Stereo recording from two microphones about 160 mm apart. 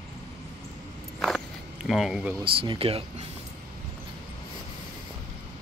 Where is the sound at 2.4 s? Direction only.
35° right (ahead or behind).